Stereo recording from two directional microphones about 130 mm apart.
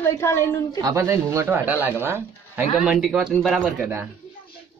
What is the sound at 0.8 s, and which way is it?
A woman's voice, 25° right (ahead or behind).